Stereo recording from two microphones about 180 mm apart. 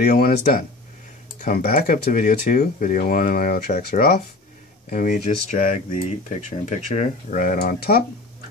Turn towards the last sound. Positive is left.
turn(degrees=55)  # may be behind; listen again after turning